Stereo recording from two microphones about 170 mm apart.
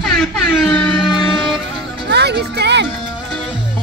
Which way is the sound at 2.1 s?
75° right (ahead or behind).